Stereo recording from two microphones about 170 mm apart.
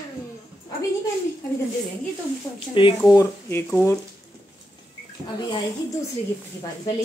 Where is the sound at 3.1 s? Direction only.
15° left (ahead or behind).